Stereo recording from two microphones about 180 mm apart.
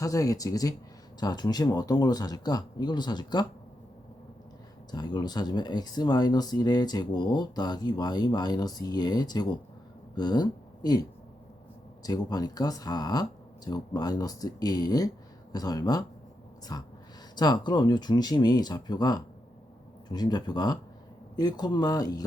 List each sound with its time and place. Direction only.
0.0 s speech: 20° left (ahead or behind)
4.9 s speech: 20° left (ahead or behind)
12.0 s speech: 20° left (ahead or behind)